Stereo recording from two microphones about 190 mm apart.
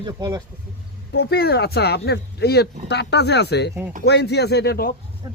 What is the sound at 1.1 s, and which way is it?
Speech, 55° left (ahead or behind).